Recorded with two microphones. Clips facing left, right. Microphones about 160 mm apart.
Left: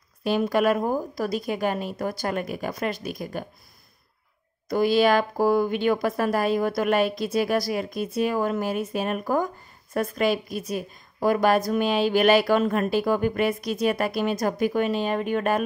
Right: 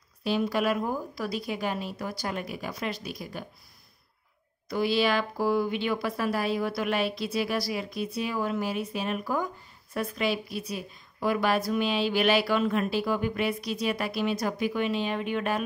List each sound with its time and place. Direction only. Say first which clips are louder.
0.2 s a woman's voice: left 5 dB; 50° left (ahead or behind)
4.6 s a woman's voice: left 6 dB; 45° left (ahead or behind)